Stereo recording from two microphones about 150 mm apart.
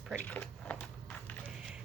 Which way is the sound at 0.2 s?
10° left (ahead or behind).